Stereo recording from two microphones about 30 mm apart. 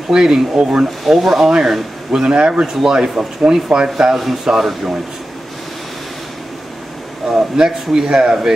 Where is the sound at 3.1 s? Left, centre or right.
Right.